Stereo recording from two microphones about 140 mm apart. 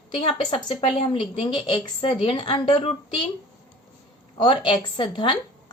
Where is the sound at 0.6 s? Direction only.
35° left (ahead or behind).